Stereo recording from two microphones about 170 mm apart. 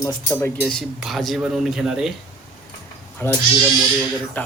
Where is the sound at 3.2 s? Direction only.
10° left (ahead or behind).